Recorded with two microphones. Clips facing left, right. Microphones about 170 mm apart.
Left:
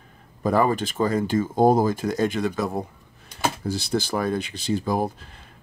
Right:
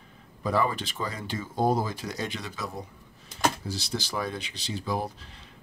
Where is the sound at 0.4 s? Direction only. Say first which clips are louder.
Left 6 dB; 45° left (ahead or behind).